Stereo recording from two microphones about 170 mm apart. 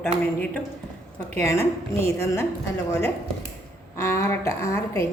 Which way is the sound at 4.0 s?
15° left (ahead or behind).